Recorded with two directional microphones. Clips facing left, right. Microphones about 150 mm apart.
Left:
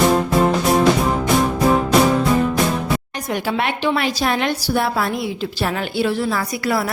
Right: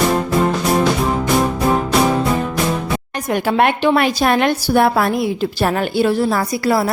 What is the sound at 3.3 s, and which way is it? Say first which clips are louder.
A woman's voice: right 6 dB; 50° right (ahead or behind).